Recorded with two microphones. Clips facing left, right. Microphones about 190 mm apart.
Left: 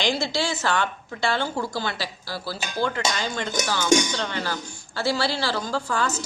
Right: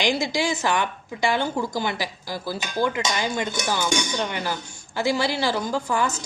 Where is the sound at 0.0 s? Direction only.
15° right (ahead or behind).